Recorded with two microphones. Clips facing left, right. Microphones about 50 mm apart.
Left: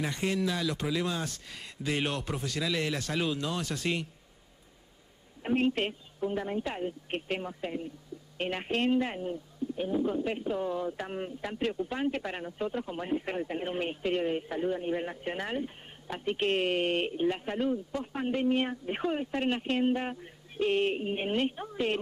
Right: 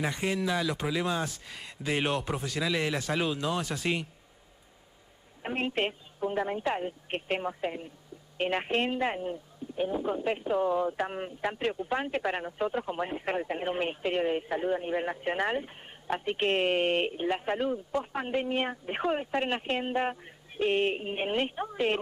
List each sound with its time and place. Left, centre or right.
0.0 s speech: centre
5.4 s speech: right